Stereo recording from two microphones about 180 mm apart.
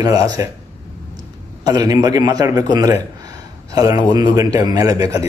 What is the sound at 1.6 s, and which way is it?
A man's voice, 20° right (ahead or behind).